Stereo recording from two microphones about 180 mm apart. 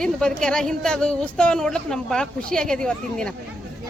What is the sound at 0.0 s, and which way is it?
A woman's voice, 5° left (ahead or behind).